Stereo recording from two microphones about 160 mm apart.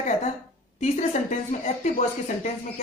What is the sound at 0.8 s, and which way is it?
Speech, 45° left (ahead or behind).